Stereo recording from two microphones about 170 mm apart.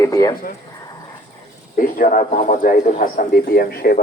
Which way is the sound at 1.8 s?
55° left (ahead or behind).